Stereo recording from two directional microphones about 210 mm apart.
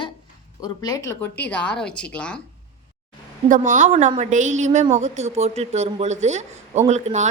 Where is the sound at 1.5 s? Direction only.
5° left (ahead or behind).